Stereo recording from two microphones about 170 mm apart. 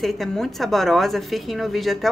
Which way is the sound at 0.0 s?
Centre (ahead or behind).